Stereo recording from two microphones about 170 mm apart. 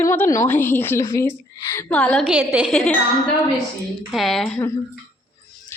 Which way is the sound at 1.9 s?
5° left (ahead or behind).